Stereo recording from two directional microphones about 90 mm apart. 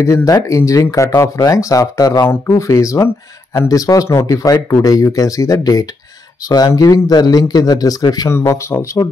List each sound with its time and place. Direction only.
0.0 s speech: 35° left (ahead or behind)
2.2 s speech: 30° left (ahead or behind); by 8.3 s 45° left (ahead or behind)
8.3 s speech: 30° left (ahead or behind)